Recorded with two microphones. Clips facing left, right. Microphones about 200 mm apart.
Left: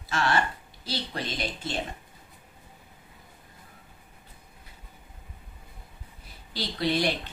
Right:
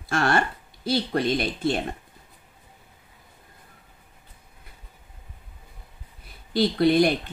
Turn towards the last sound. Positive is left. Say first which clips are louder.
# right 8 dB
turn(degrees=-50)  # may be behind; listen again after turning